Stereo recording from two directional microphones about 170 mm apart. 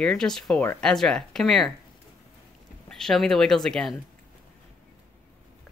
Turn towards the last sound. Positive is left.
turn(degrees=5)  # may be behind; listen again after turning